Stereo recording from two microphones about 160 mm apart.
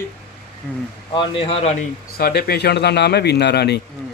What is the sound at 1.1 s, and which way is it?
Speech, 35° left (ahead or behind).